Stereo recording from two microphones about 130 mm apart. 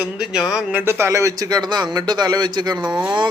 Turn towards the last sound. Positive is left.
turn(degrees=-35)  # may be behind; listen again after turning